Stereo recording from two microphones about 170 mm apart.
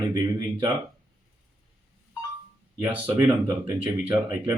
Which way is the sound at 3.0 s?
25° right (ahead or behind).